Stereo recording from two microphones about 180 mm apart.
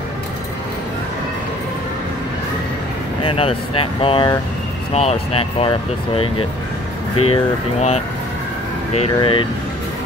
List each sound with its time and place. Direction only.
3.2 s speech: 30° left (ahead or behind)